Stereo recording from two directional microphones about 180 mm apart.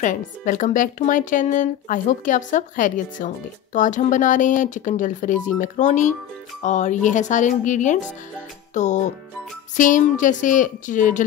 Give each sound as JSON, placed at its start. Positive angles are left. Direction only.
{"t": 0.0, "sound": "speech", "side_deg": 45}